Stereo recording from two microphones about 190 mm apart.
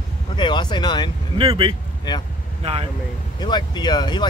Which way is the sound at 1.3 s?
30° right (ahead or behind).